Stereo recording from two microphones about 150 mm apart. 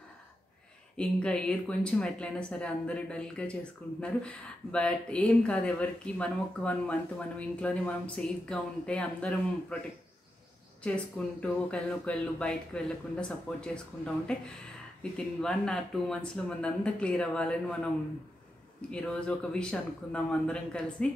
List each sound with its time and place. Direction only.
0.9 s speech: 5° left (ahead or behind)
10.8 s speech: 5° left (ahead or behind)
18.9 s speech: 5° left (ahead or behind)